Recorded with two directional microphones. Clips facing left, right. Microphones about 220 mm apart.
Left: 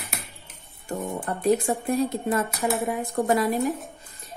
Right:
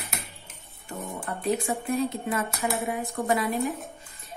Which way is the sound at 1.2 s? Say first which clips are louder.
Left 5 dB; 45° left (ahead or behind).